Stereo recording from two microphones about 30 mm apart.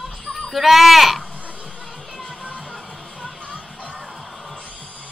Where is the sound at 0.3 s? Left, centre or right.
Centre.